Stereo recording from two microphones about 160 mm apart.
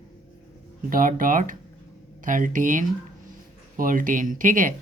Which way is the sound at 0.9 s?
60° right (ahead or behind).